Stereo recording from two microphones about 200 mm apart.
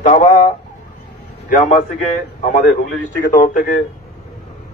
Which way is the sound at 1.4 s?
40° left (ahead or behind).